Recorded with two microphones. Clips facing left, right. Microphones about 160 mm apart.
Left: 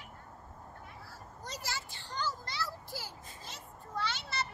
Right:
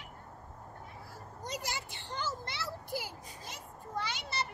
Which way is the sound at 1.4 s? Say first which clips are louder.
Right 2 dB; 15° right (ahead or behind).